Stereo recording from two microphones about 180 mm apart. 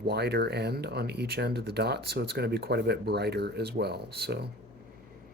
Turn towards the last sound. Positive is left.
turn(degrees=-65)  # may be behind; listen again after turning